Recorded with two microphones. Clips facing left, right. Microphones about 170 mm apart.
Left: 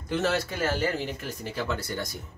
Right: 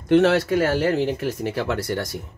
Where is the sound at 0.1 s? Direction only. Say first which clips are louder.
Right 11 dB; 70° right (ahead or behind).